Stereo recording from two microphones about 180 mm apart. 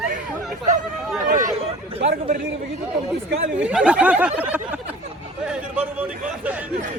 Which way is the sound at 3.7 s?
5° right (ahead or behind).